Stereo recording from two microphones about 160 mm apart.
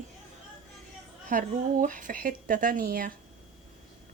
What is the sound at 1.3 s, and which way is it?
Speech, 55° right (ahead or behind).